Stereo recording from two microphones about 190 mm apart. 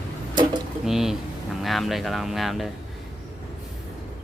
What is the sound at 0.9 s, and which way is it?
Speech, centre (ahead or behind).